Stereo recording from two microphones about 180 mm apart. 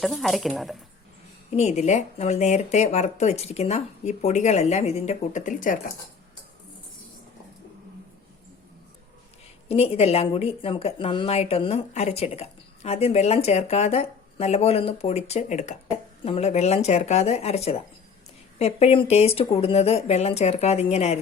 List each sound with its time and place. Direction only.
0.0 s speech: centre (ahead or behind)
1.5 s speech: 40° left (ahead or behind)
9.6 s speech: 35° left (ahead or behind)